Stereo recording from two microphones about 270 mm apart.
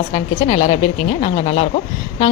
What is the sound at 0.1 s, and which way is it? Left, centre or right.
A woman's voice, left.